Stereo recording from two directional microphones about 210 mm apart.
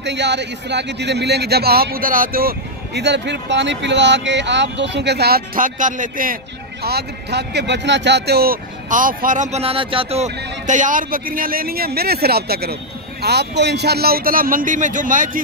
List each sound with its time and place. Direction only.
0.0 s speech: 55° right (ahead or behind)